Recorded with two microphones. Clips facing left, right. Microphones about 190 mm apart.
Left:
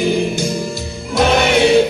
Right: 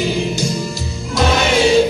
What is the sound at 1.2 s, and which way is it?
Music, 60° left (ahead or behind).